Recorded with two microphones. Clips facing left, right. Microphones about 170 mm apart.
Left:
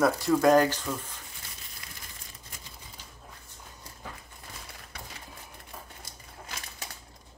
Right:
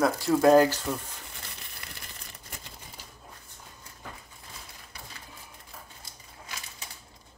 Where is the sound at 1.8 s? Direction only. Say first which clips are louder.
Right 3 dB; 60° right (ahead or behind).